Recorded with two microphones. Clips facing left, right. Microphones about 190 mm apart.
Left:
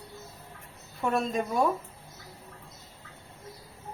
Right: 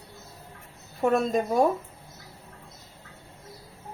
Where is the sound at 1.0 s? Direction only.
40° right (ahead or behind).